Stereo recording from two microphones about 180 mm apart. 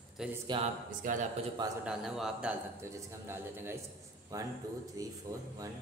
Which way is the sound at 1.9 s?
Centre (ahead or behind).